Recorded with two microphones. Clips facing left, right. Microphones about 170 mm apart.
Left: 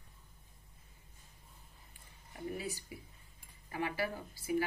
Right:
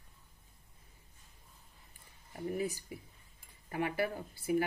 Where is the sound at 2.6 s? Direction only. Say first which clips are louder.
Right 6 dB; 50° right (ahead or behind).